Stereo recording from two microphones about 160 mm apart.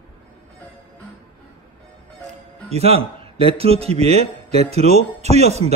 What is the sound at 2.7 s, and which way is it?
A man's voice, 40° right (ahead or behind).